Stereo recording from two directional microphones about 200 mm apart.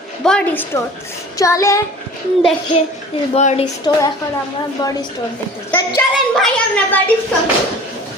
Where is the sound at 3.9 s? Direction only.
20° left (ahead or behind).